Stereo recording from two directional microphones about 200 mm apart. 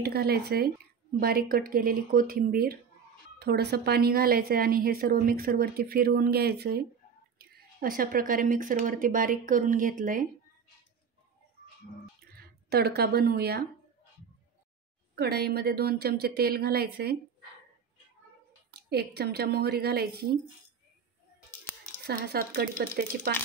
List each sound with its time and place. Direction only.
0.0 s a woman's voice: 50° right (ahead or behind)
12.4 s speech: 50° right (ahead or behind)
15.1 s a woman's voice: 55° right (ahead or behind)
18.7 s a woman's voice: 55° right (ahead or behind)
22.0 s a woman's voice: 55° right (ahead or behind)